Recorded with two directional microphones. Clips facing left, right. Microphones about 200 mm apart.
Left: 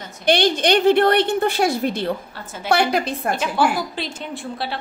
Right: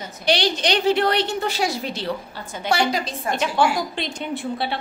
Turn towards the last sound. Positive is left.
turn(degrees=0)  # may be behind; listen again after turning